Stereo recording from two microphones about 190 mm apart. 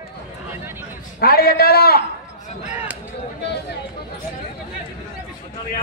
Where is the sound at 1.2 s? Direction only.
55° left (ahead or behind).